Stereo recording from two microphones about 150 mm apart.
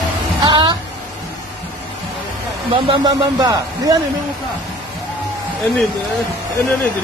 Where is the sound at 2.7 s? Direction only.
30° right (ahead or behind).